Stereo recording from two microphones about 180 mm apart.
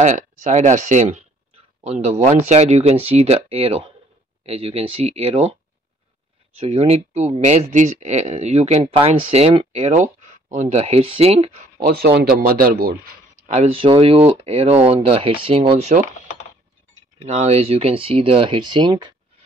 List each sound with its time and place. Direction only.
0.0 s speech: 40° right (ahead or behind)
6.6 s speech: 35° right (ahead or behind)
11.8 s speech: 60° right (ahead or behind)
13.5 s speech: 35° right (ahead or behind)
17.2 s speech: 35° right (ahead or behind)